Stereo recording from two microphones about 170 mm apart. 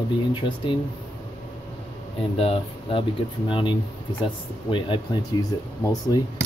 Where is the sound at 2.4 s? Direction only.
35° left (ahead or behind).